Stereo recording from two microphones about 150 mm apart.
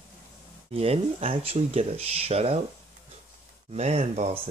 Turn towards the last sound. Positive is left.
turn(degrees=-45)  # may be behind; listen again after turning